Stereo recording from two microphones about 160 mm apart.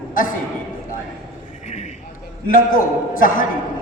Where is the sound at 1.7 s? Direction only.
45° left (ahead or behind).